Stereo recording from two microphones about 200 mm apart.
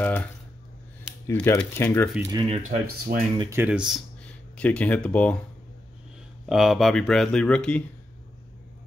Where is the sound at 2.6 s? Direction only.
50° right (ahead or behind).